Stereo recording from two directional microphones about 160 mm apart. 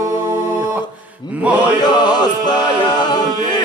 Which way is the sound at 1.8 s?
25° left (ahead or behind).